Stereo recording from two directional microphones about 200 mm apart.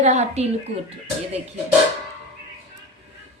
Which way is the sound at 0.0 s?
35° right (ahead or behind).